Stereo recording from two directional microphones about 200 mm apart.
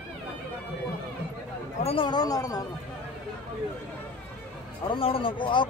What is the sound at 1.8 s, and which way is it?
Speech, 30° left (ahead or behind).